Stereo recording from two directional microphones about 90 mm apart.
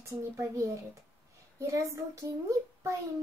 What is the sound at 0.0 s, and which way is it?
A child's voice, 35° right (ahead or behind).